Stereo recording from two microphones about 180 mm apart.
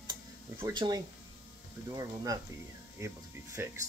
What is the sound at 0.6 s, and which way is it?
Speech, 20° right (ahead or behind).